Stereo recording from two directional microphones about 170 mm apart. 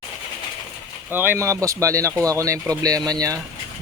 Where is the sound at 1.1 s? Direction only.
10° right (ahead or behind).